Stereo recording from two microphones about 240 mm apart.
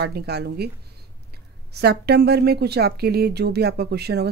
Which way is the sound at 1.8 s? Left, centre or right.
Right.